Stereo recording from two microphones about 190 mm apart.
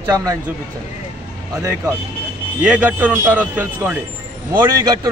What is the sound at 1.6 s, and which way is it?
A man's voice, 15° right (ahead or behind).